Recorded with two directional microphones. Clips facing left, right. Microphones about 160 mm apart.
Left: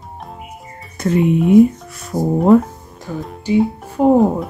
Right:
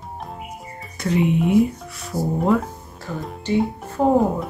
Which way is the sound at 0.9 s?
45° left (ahead or behind).